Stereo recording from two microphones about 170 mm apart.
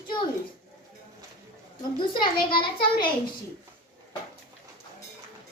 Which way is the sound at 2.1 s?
30° left (ahead or behind).